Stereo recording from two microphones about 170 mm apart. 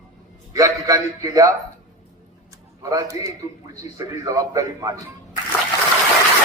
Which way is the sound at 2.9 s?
20° right (ahead or behind).